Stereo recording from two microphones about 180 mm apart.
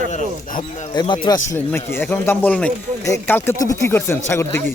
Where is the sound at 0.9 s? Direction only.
25° left (ahead or behind).